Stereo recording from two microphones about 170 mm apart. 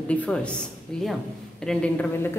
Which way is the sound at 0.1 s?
5° left (ahead or behind).